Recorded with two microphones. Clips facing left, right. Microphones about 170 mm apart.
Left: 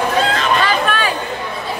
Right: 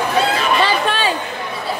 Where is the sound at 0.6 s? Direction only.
25° right (ahead or behind).